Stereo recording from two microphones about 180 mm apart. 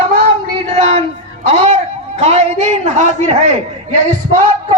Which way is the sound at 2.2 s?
35° right (ahead or behind).